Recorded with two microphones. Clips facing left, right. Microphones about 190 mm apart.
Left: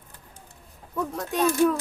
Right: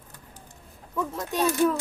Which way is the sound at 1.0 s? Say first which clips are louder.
Left 1 dB; centre (ahead or behind).